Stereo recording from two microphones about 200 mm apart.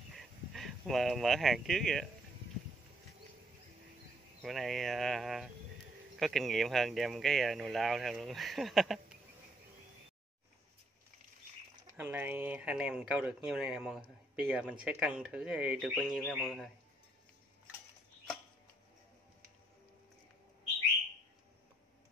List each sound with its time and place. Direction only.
0.1 s a sound: centre (ahead or behind)
4.4 s speech: centre (ahead or behind)
12.0 s speech: 10° right (ahead or behind)